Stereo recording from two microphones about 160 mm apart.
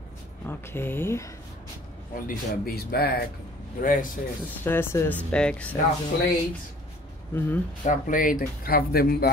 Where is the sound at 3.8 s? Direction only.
55° left (ahead or behind).